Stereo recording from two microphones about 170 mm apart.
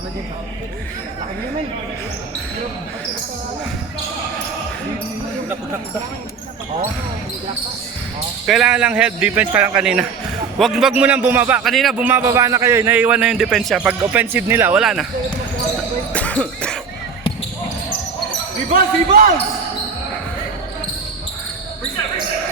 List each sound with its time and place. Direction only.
8.4 s a man's voice: 5° right (ahead or behind)
11.6 s a man's voice: centre (ahead or behind)
16.1 s basketball bounce: 5° left (ahead or behind)
18.7 s speech: 55° right (ahead or behind)